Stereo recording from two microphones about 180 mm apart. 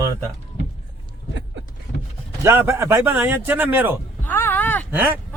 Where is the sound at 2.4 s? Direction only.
15° right (ahead or behind).